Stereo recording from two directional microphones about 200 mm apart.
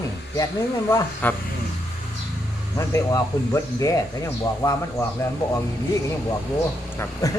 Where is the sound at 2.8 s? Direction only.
15° left (ahead or behind).